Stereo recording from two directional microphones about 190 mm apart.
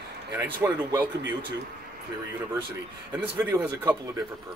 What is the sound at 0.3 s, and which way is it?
Speech, 20° right (ahead or behind).